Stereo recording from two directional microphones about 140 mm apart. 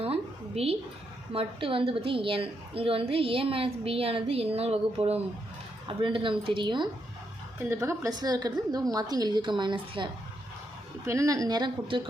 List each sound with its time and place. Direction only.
0.0 s a sound: 45° right (ahead or behind)
1.3 s a woman's voice: 40° right (ahead or behind)
7.6 s a woman's voice: 20° right (ahead or behind); by 10.1 s 35° right (ahead or behind)
11.0 s a woman's voice: 20° right (ahead or behind)